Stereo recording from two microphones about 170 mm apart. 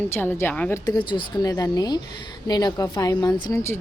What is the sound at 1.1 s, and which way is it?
A woman's voice, 20° left (ahead or behind).